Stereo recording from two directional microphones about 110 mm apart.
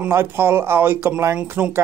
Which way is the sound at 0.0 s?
20° right (ahead or behind).